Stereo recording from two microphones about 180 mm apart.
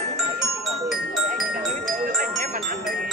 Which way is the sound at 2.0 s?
50° right (ahead or behind).